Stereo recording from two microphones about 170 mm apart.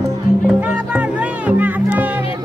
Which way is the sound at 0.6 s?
10° right (ahead or behind).